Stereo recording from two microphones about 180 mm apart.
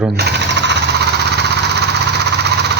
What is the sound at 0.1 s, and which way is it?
Jackhammer, 65° right (ahead or behind).